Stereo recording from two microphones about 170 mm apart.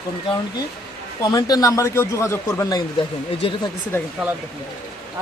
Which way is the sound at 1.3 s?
20° left (ahead or behind).